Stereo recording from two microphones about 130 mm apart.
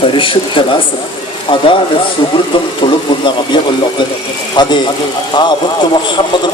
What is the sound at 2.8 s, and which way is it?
Speech, 35° left (ahead or behind).